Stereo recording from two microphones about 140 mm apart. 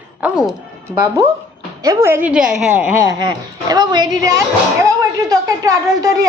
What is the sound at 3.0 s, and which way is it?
A child's voice, 30° right (ahead or behind).